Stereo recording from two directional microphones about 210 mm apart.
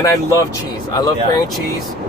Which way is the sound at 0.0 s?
15° left (ahead or behind).